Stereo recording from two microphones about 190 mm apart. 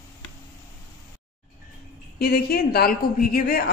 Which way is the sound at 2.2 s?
55° left (ahead or behind).